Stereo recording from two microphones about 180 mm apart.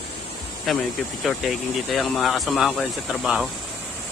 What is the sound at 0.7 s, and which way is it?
Speech, centre (ahead or behind).